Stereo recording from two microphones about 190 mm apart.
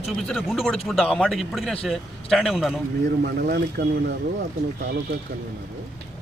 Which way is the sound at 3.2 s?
60° right (ahead or behind).